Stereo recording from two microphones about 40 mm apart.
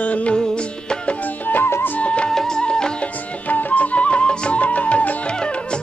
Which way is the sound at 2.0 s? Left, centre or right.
Left.